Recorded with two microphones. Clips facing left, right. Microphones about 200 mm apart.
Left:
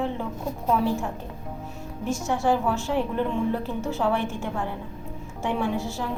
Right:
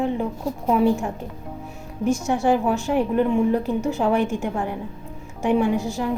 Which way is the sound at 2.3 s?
15° right (ahead or behind).